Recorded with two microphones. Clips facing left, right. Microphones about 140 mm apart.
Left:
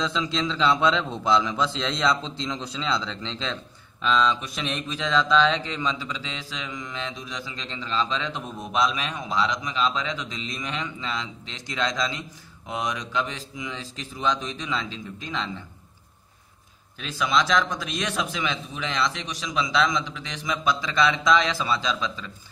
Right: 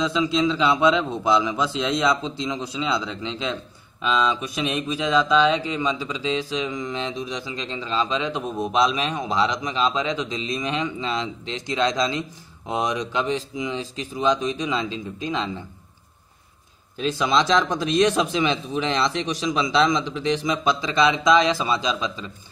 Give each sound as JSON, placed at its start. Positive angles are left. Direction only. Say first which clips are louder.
{"t": 0.0, "sound": "a man's voice", "louder": "right 6 dB", "side_deg": -10}
{"t": 17.0, "sound": "speech", "louder": "right 4 dB", "side_deg": -25}